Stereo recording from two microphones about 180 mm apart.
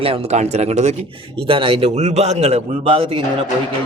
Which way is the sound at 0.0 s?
35° right (ahead or behind).